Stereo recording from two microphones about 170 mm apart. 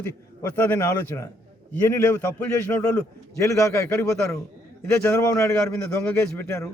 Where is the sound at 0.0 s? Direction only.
10° left (ahead or behind).